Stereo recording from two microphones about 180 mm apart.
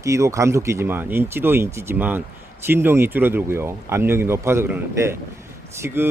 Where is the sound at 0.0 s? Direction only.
15° right (ahead or behind).